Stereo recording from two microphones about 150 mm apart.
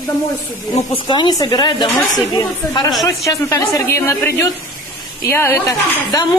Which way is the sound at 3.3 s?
20° left (ahead or behind).